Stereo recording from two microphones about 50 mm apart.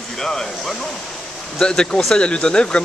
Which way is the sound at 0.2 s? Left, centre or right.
Centre.